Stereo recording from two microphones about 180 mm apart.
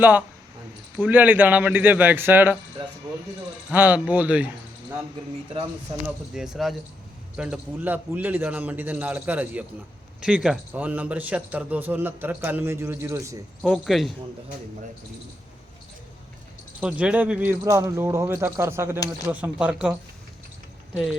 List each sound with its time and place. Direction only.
0.0 s a man's voice: 10° right (ahead or behind)
6.3 s a man's voice: 5° right (ahead or behind)
13.6 s speech: centre (ahead or behind)
16.8 s a man's voice: 10° right (ahead or behind)
20.9 s speech: centre (ahead or behind)